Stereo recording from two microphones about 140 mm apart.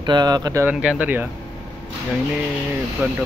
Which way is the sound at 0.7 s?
10° right (ahead or behind).